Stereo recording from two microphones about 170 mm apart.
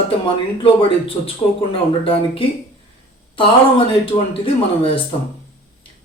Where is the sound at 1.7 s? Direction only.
30° left (ahead or behind).